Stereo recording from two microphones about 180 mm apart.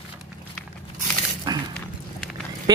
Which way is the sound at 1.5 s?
20° right (ahead or behind).